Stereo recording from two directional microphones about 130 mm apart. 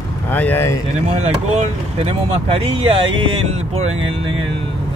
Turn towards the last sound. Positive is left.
turn(degrees=-50)  # may be behind; listen again after turning